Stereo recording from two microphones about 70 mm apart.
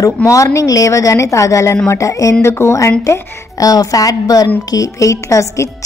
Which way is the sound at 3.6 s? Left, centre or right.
Left.